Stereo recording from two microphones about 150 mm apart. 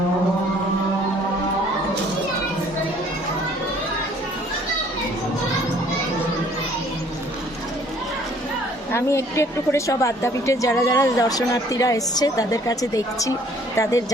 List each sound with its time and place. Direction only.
8.9 s a woman's voice: 20° left (ahead or behind)